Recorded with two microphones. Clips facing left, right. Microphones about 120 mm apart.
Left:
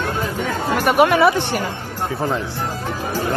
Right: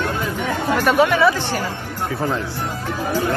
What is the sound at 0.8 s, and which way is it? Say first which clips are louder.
Speech: left 2 dB; 20° left (ahead or behind).